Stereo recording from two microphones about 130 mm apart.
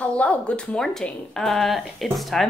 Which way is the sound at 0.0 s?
10° left (ahead or behind).